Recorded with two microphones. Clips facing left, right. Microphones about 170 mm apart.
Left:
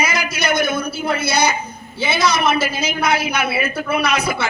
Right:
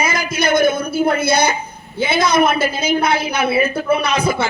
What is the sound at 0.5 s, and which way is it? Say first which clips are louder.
A woman's voice: right 5 dB; 50° right (ahead or behind).